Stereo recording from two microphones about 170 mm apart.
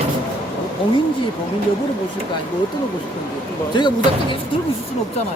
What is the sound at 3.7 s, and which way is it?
Speech, 25° left (ahead or behind).